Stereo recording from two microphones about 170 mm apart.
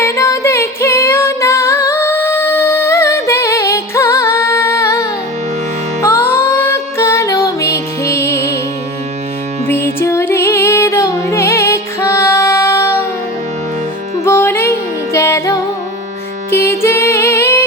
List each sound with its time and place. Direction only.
0.0 s music: 15° left (ahead or behind)
9.6 s music: 15° left (ahead or behind)
14.3 s music: 15° left (ahead or behind)
16.6 s music: 15° left (ahead or behind)